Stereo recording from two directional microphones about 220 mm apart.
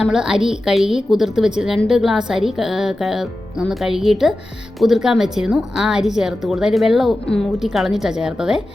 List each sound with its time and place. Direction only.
0.0 s a woman's voice: 5° right (ahead or behind)